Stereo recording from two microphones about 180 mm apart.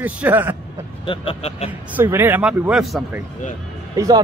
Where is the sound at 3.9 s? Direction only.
20° right (ahead or behind).